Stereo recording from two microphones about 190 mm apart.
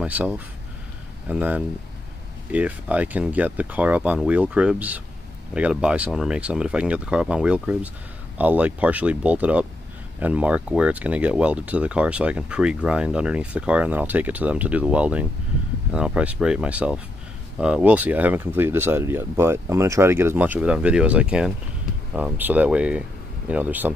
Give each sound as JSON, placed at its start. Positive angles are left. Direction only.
{"t": 0.0, "sound": "speech", "side_deg": -5}